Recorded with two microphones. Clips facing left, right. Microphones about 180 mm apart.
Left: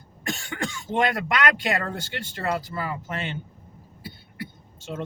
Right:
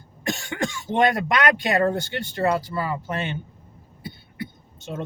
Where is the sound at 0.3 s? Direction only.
25° right (ahead or behind).